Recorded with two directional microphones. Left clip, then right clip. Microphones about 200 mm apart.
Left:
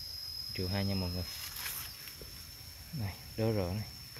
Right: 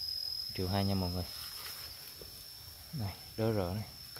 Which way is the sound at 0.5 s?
15° right (ahead or behind).